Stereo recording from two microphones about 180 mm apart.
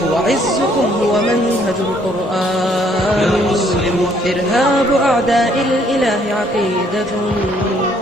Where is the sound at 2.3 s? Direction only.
Centre (ahead or behind).